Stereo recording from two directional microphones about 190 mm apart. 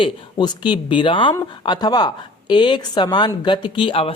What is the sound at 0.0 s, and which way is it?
A woman's voice, 25° left (ahead or behind).